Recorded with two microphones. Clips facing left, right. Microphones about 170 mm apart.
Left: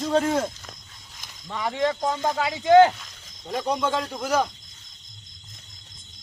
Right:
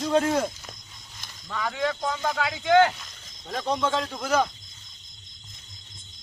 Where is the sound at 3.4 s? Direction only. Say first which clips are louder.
Left 1 dB; 10° left (ahead or behind).